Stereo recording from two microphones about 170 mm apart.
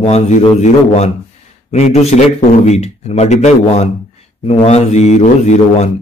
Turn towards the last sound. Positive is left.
turn(degrees=40)  # may be behind; listen again after turning